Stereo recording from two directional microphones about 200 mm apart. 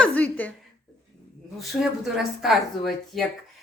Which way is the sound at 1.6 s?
Centre (ahead or behind).